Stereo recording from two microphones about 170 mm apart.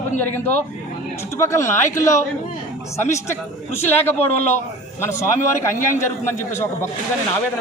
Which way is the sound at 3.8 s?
15° left (ahead or behind).